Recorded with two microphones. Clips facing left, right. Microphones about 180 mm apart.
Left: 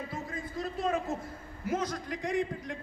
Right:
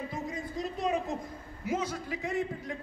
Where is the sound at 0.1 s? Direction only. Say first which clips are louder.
Right 2 dB; 15° right (ahead or behind).